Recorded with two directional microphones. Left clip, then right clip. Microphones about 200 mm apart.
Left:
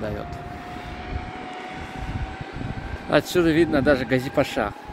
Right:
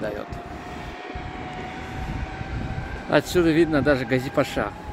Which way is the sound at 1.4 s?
Centre (ahead or behind).